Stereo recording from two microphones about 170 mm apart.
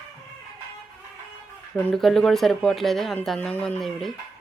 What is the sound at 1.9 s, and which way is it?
Speech, centre (ahead or behind).